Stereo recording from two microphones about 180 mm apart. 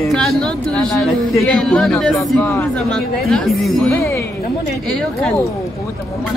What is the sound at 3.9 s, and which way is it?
Speech, 15° left (ahead or behind).